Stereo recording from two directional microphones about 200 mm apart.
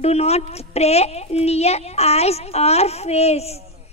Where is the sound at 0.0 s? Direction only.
30° left (ahead or behind).